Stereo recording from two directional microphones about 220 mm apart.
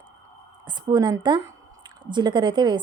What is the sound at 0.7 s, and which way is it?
Speech, 20° right (ahead or behind).